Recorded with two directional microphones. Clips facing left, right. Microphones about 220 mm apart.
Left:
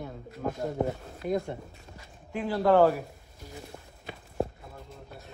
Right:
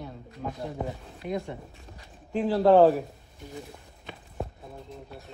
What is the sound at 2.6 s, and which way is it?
Speech, 25° right (ahead or behind).